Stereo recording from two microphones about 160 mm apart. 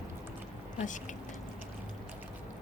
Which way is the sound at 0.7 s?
50° left (ahead or behind).